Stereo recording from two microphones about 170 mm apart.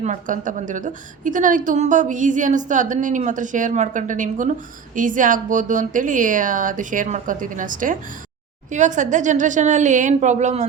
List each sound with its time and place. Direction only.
0.0 s a woman's voice: 50° right (ahead or behind)